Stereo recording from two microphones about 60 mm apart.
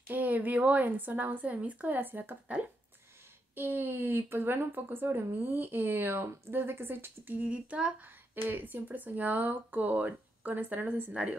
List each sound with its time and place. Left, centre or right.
0.1 s speech: right
3.5 s speech: right; by 7.9 s centre
8.5 s speech: right